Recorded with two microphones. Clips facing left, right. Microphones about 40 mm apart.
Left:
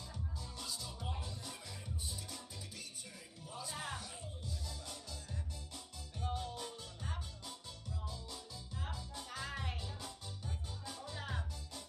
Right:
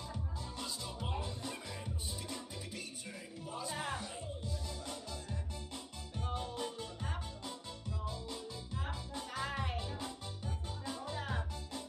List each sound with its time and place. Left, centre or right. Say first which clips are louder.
0.1 s music: right 4 dB; right
9.8 s music: right 6 dB; right
11.1 s music: right 2 dB; centre